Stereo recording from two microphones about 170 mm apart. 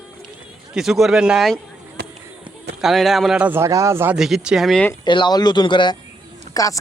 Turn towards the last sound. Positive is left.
turn(degrees=20)  # may be behind; listen again after turning